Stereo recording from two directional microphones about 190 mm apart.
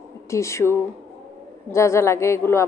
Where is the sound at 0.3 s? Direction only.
15° left (ahead or behind).